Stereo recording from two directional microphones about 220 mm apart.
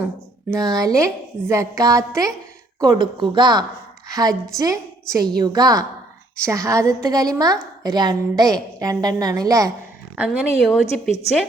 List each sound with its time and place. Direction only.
0.6 s a woman's voice: 15° right (ahead or behind)
10.2 s speech: 5° right (ahead or behind)